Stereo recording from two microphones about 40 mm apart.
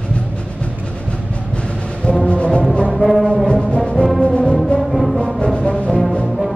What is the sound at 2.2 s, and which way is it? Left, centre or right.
Music, left.